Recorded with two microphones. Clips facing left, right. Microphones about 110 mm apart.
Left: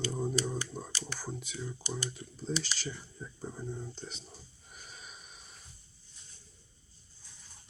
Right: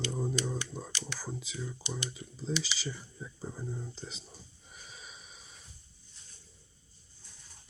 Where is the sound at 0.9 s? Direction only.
40° left (ahead or behind).